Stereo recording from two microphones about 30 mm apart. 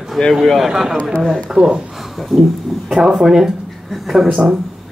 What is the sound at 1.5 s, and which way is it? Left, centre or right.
Speech, right.